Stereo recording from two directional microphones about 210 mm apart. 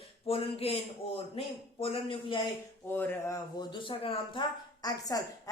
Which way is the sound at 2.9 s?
10° left (ahead or behind).